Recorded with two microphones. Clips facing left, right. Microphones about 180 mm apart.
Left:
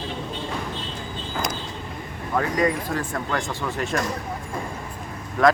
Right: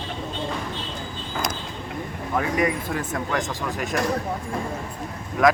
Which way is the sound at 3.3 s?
5° right (ahead or behind).